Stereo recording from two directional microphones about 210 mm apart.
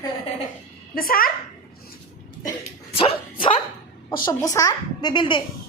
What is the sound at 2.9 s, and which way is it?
A woman's voice, 25° left (ahead or behind).